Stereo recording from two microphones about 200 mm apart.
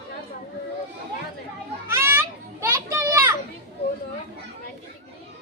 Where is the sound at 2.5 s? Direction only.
15° right (ahead or behind).